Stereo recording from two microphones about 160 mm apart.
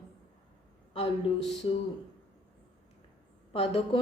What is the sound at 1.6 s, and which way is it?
Speech, 35° left (ahead or behind).